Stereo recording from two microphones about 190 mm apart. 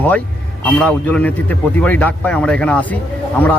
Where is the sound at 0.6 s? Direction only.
5° left (ahead or behind).